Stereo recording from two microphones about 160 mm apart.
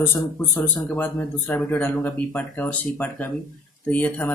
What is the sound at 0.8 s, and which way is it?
Speech, 5° left (ahead or behind).